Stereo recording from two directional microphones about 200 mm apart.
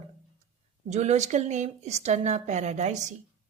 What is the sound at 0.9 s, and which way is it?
Speech, 35° right (ahead or behind).